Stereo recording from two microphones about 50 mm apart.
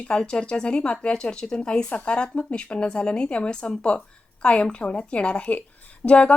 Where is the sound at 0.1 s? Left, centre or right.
Centre.